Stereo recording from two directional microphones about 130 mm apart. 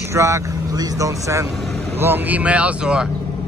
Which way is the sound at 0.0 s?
20° right (ahead or behind).